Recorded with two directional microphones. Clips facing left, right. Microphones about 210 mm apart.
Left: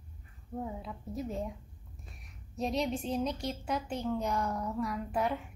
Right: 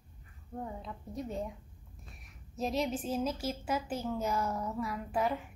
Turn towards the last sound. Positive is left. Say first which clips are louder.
# even
turn(degrees=0)  # may be behind; listen again after turning